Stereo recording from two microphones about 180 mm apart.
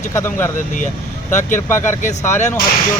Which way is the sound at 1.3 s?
45° left (ahead or behind).